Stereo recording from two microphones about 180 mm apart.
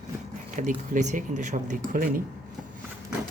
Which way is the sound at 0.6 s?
45° right (ahead or behind).